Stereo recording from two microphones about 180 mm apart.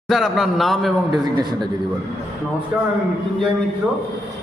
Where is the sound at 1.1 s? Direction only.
20° right (ahead or behind).